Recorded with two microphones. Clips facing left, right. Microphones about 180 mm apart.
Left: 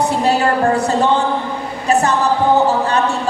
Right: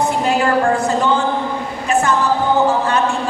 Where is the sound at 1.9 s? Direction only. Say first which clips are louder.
Left 2 dB; 35° left (ahead or behind).